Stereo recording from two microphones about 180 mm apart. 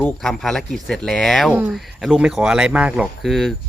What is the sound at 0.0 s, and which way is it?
Speech, centre (ahead or behind).